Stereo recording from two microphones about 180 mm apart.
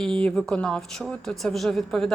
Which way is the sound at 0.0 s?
5° left (ahead or behind).